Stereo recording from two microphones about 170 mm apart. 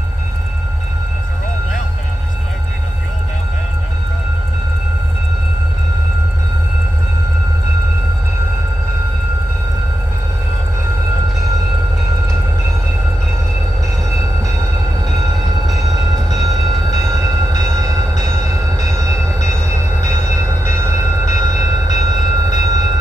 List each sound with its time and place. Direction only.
15.7 s train: 20° right (ahead or behind)